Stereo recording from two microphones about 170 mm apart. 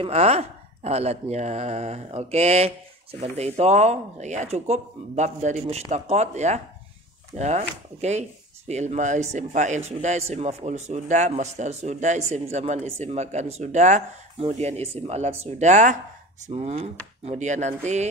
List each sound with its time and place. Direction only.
0.0 s speech: 40° right (ahead or behind)